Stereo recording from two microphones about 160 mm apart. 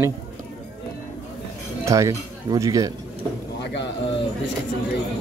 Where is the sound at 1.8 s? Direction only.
20° right (ahead or behind).